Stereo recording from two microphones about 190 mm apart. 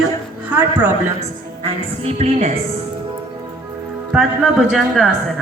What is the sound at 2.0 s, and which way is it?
Speech, 35° right (ahead or behind).